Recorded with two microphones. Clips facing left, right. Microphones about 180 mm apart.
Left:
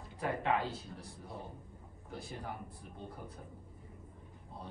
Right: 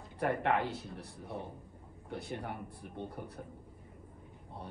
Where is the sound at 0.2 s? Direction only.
65° right (ahead or behind).